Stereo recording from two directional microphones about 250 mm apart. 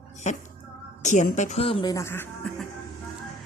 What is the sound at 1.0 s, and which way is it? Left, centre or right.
Speech, left.